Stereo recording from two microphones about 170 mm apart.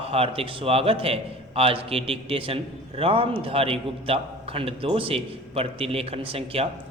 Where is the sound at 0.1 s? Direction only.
35° right (ahead or behind).